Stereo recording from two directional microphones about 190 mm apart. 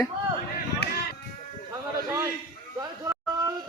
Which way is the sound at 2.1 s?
15° right (ahead or behind).